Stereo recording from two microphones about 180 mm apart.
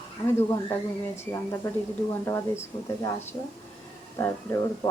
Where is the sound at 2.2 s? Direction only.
15° left (ahead or behind).